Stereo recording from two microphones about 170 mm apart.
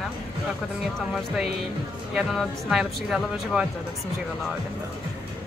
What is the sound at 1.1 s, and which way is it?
Speech, 5° right (ahead or behind).